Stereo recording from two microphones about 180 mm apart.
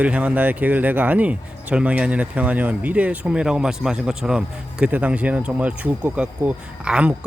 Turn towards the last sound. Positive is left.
turn(degrees=-5)  # may be behind; listen again after turning